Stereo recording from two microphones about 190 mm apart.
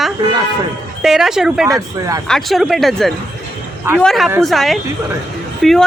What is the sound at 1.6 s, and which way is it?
Speech, 20° right (ahead or behind).